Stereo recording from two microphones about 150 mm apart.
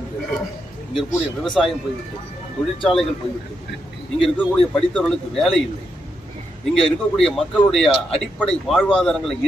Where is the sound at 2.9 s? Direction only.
5° right (ahead or behind).